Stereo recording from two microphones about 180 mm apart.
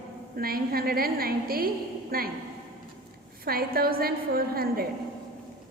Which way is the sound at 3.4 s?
55° right (ahead or behind).